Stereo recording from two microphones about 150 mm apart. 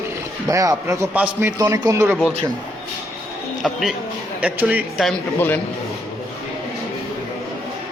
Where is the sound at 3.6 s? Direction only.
Centre (ahead or behind).